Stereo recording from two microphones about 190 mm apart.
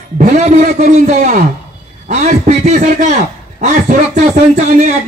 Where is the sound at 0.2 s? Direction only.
45° right (ahead or behind).